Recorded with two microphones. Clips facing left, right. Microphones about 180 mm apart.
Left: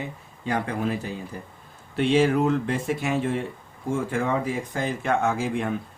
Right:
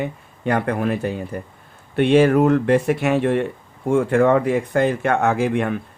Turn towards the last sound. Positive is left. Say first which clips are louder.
# right 6 dB
turn(degrees=-65)  # may be behind; listen again after turning